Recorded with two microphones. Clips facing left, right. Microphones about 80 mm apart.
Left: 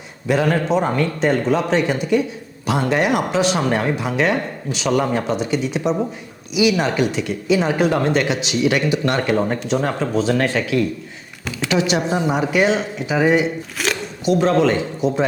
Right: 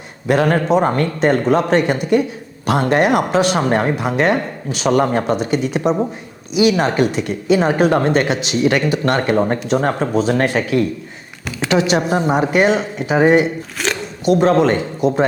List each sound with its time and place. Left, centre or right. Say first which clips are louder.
0.3 s speech: right 3 dB; right
3.6 s speech: right 3 dB; right
10.6 s speech: right 2 dB; right
13.8 s zipper: right 1 dB; centre
14.3 s speech: right 3 dB; right